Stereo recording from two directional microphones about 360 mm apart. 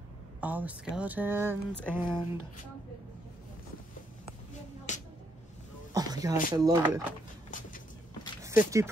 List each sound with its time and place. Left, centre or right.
0.4 s speech: centre
4.9 s a sound: centre
5.9 s a sound: centre
6.5 s speech: centre
7.5 s vehicle: left
8.5 s speech: centre